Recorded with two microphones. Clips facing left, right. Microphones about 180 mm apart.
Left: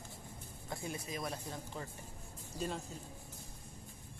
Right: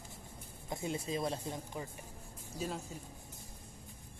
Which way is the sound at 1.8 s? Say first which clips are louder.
Right 2 dB; 10° right (ahead or behind).